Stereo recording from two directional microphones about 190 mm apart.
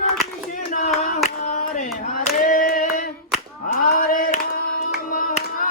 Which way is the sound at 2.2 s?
45° left (ahead or behind).